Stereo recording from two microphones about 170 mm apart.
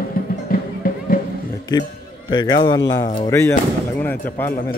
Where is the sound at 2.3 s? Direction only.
25° left (ahead or behind).